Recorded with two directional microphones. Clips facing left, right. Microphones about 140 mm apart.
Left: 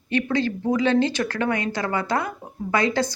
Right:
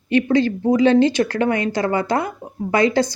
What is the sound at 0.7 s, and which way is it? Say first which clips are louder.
Speech: right 7 dB; 35° right (ahead or behind).